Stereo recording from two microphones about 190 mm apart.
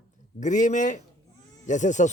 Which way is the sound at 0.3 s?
40° left (ahead or behind).